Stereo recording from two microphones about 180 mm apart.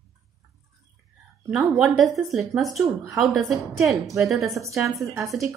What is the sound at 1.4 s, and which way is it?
Speech, 5° right (ahead or behind).